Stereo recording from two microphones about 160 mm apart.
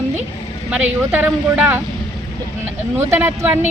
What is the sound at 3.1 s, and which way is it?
Speech, 15° right (ahead or behind).